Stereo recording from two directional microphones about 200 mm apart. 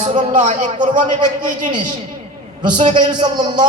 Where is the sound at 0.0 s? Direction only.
35° right (ahead or behind).